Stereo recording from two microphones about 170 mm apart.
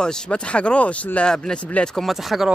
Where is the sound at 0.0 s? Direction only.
5° left (ahead or behind).